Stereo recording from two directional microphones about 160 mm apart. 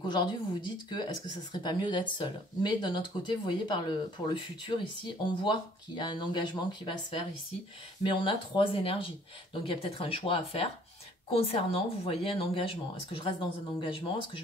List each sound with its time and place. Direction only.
0.1 s speech: 30° left (ahead or behind)